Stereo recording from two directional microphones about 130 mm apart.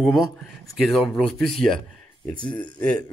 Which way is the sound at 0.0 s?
Centre (ahead or behind).